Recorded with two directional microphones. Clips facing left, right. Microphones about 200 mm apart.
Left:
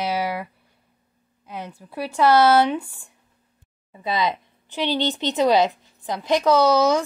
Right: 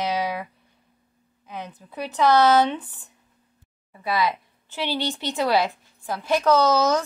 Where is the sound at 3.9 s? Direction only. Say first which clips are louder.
Even; 20° left (ahead or behind).